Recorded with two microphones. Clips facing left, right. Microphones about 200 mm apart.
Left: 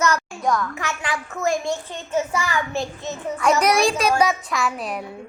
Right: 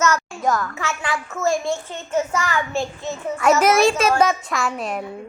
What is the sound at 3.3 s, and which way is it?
A child's voice, centre (ahead or behind).